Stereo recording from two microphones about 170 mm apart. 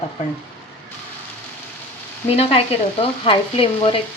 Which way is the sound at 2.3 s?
35° left (ahead or behind).